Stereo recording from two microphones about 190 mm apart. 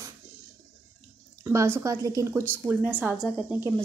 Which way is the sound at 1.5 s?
15° right (ahead or behind).